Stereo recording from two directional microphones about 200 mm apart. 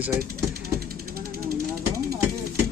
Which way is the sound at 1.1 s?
50° right (ahead or behind).